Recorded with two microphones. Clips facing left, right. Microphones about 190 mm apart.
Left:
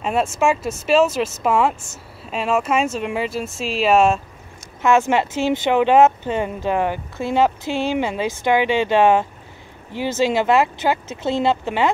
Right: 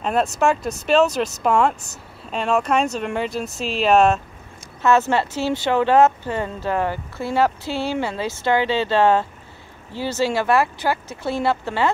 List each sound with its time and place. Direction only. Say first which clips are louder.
0.0 s speech: even; 5° left (ahead or behind)
4.8 s speech: left 1 dB; 15° left (ahead or behind)